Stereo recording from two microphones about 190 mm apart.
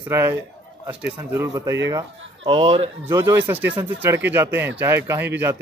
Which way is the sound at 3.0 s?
15° right (ahead or behind).